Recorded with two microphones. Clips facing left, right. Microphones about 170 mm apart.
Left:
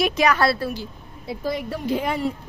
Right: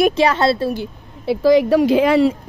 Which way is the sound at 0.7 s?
70° right (ahead or behind).